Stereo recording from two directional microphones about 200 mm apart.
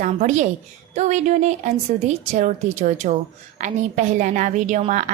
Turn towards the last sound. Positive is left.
turn(degrees=-40)  # may be behind; listen again after turning